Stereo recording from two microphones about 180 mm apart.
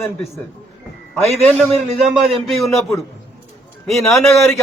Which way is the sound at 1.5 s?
Centre (ahead or behind).